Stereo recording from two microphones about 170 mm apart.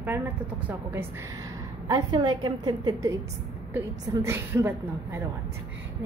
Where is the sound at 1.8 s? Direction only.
25° right (ahead or behind).